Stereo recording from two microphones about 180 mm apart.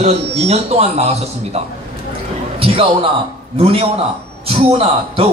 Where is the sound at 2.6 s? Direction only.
30° right (ahead or behind).